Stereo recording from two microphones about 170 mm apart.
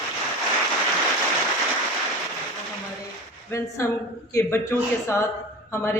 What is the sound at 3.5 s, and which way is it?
A man's voice, 20° left (ahead or behind).